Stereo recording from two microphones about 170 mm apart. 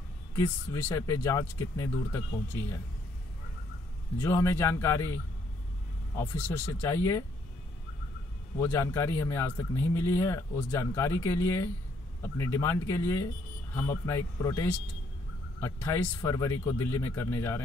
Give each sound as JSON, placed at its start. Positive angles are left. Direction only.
{"t": 0.3, "sound": "speech", "side_deg": 15}
{"t": 4.2, "sound": "speech", "side_deg": 15}
{"t": 8.5, "sound": "speech", "side_deg": 15}